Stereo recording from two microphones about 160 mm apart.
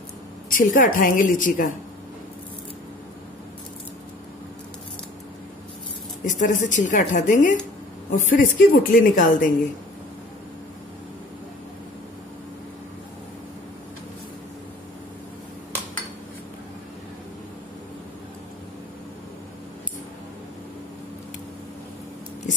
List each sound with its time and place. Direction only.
0.5 s a woman's voice: 55° left (ahead or behind)
6.2 s a woman's voice: 50° left (ahead or behind)